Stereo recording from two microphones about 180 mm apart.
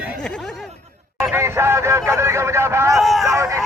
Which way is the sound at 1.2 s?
15° right (ahead or behind).